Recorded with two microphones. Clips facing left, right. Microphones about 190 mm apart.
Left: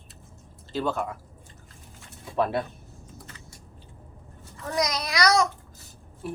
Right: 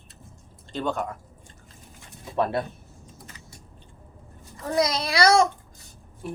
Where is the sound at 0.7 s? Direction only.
5° left (ahead or behind).